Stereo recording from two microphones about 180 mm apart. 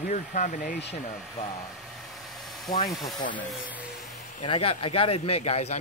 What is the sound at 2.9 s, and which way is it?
Speech, centre (ahead or behind).